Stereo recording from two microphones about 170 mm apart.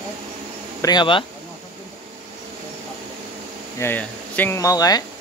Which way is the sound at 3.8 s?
10° left (ahead or behind).